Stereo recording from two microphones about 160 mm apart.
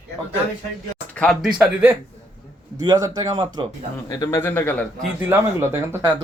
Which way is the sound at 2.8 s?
25° right (ahead or behind).